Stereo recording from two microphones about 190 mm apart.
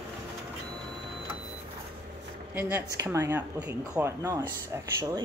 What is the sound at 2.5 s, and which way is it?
Speech, 10° right (ahead or behind).